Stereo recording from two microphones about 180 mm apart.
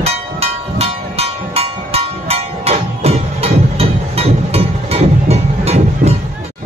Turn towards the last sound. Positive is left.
turn(degrees=-35)  # may be behind; listen again after turning